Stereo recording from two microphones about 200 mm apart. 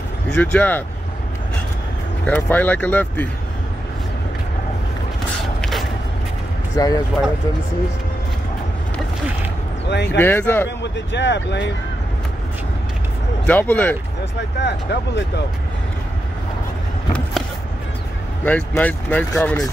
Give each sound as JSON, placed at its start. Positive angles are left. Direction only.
{"t": 0.3, "sound": "speech", "side_deg": 5}
{"t": 2.2, "sound": "speech", "side_deg": 10}
{"t": 5.6, "sound": "a sound", "side_deg": 0}
{"t": 6.8, "sound": "speech", "side_deg": 20}
{"t": 9.8, "sound": "speech", "side_deg": 60}
{"t": 10.1, "sound": "speech", "side_deg": 10}
{"t": 10.8, "sound": "speech", "side_deg": 65}
{"t": 13.5, "sound": "speech", "side_deg": 10}
{"t": 14.6, "sound": "speech", "side_deg": 60}
{"t": 18.4, "sound": "speech", "side_deg": 10}